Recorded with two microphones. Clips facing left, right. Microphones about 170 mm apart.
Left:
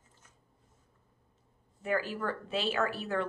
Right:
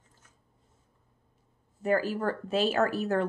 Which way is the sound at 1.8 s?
40° right (ahead or behind).